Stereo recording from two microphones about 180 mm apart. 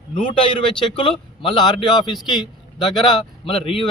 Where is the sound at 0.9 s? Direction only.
30° left (ahead or behind).